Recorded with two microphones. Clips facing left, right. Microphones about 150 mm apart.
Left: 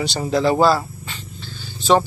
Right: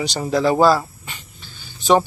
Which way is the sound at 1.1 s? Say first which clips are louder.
Left 4 dB; 10° right (ahead or behind).